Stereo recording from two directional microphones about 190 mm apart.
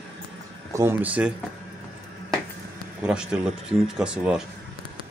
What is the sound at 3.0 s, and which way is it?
Speech, 5° right (ahead or behind).